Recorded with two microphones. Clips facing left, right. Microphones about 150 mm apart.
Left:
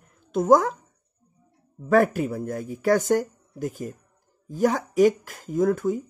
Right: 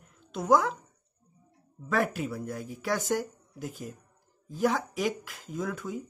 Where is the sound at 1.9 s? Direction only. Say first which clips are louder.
Left 9 dB; 45° left (ahead or behind).